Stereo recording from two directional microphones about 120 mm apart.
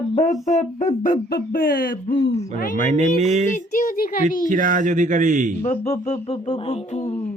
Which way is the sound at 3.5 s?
90° left.